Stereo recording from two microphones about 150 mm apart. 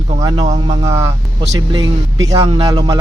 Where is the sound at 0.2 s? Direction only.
25° right (ahead or behind).